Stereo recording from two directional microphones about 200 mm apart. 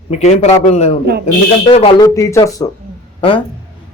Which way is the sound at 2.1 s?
15° left (ahead or behind).